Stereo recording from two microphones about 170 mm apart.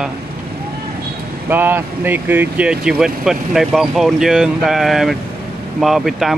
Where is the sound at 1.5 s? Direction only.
10° right (ahead or behind).